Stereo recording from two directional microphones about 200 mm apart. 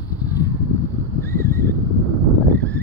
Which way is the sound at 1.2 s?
15° left (ahead or behind).